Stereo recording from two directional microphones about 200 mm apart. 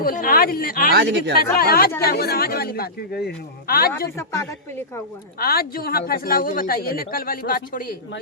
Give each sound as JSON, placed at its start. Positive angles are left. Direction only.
{"t": 0.0, "sound": "speech", "side_deg": 45}
{"t": 0.9, "sound": "speech", "side_deg": -55}
{"t": 1.5, "sound": "speech", "side_deg": 50}
{"t": 4.2, "sound": "speech", "side_deg": 15}
{"t": 5.4, "sound": "speech", "side_deg": 50}